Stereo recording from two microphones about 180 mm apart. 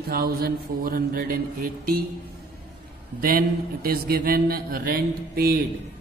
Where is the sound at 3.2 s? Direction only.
55° right (ahead or behind).